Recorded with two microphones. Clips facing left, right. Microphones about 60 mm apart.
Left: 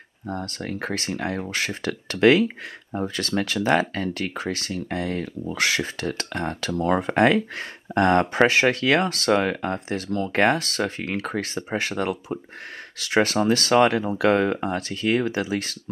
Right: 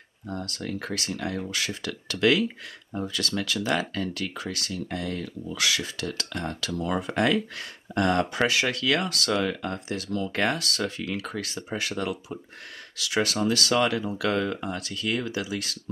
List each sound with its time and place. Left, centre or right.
0.3 s speech: left